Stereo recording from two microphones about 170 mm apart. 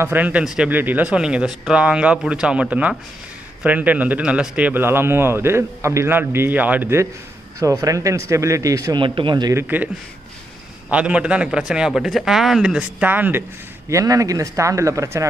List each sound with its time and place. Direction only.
0.0 s a man's voice: 10° right (ahead or behind)
9.6 s a man's voice: 10° right (ahead or behind)
10.9 s a man's voice: 5° right (ahead or behind)